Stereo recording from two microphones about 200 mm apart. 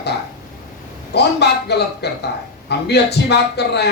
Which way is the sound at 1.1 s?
55° left (ahead or behind).